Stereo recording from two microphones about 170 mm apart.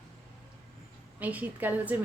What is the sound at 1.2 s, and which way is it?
Speech, 10° right (ahead or behind).